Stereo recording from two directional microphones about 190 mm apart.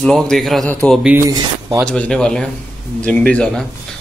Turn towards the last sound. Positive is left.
turn(degrees=5)  # may be behind; listen again after turning